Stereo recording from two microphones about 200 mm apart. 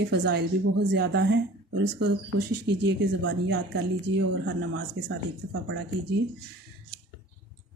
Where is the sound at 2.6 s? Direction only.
60° right (ahead or behind).